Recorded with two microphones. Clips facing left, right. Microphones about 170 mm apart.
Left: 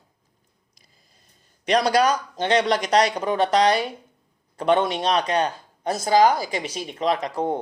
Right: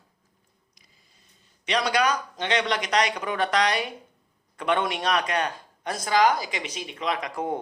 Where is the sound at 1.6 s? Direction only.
40° left (ahead or behind).